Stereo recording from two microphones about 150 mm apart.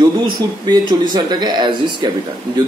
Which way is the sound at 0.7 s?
30° right (ahead or behind).